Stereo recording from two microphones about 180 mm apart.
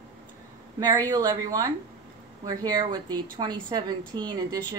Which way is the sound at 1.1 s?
20° right (ahead or behind).